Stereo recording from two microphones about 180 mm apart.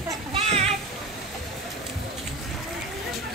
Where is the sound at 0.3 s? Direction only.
35° right (ahead or behind).